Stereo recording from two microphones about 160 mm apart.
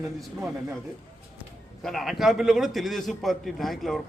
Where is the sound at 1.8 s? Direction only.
Centre (ahead or behind).